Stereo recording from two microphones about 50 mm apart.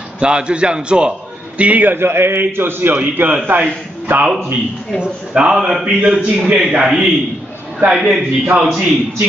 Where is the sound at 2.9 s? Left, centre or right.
Right.